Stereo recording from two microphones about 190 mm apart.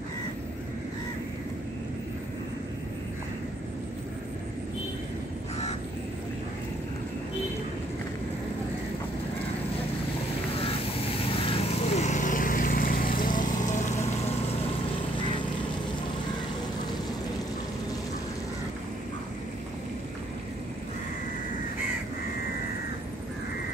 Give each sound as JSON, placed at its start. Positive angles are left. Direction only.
{"t": 11.6, "sound": "lawn mower", "side_deg": 35}